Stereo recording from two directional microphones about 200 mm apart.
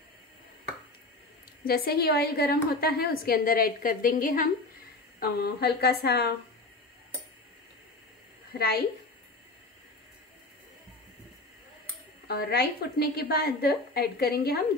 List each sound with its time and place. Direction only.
1.6 s a woman's voice: 50° left (ahead or behind)
8.5 s a woman's voice: 50° left (ahead or behind)
12.3 s a woman's voice: 50° left (ahead or behind)